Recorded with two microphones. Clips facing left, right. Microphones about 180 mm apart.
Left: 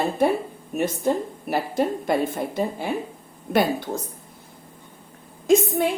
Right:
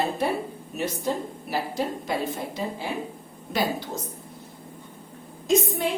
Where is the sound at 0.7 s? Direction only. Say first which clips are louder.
Left 5 dB; 50° left (ahead or behind).